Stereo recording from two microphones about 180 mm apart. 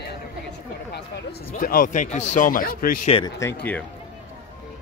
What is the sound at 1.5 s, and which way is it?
A man's voice, 50° left (ahead or behind).